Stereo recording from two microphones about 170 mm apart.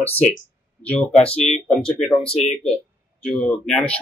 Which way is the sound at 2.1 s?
35° left (ahead or behind).